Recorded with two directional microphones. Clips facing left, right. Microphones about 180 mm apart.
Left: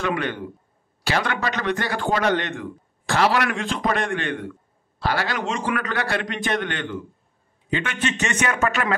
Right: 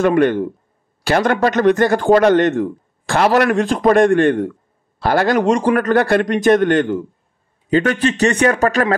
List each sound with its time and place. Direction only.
0.0 s a man's voice: 50° right (ahead or behind)